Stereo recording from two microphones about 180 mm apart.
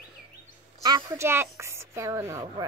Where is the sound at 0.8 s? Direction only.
20° right (ahead or behind).